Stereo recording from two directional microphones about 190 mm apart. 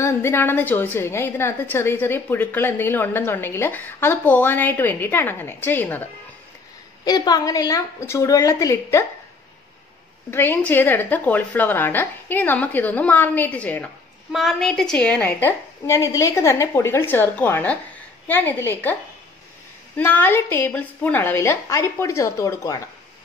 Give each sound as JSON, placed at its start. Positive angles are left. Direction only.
{"t": 0.0, "sound": "a woman's voice", "side_deg": 10}
{"t": 7.1, "sound": "a woman's voice", "side_deg": 20}
{"t": 10.3, "sound": "a woman's voice", "side_deg": 10}
{"t": 20.0, "sound": "a woman's voice", "side_deg": 10}